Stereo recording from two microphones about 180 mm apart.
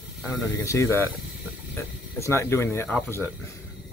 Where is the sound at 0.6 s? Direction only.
15° left (ahead or behind).